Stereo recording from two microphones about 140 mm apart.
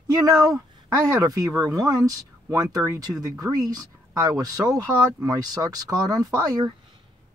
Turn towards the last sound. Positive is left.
turn(degrees=-25)  # may be behind; listen again after turning